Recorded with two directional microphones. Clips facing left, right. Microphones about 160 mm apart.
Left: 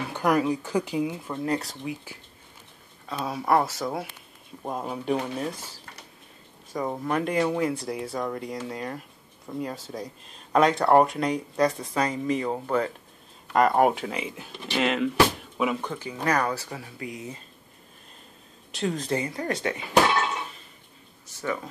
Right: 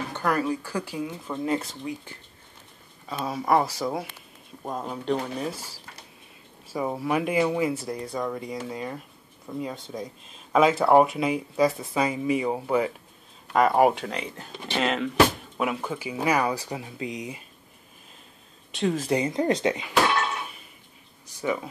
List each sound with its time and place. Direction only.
0.1 s speech: 15° left (ahead or behind)
1.2 s speech: centre (ahead or behind); by 17.4 s 20° right (ahead or behind)
18.7 s speech: centre (ahead or behind)
19.0 s speech: 20° right (ahead or behind)
21.3 s a sound: 15° right (ahead or behind)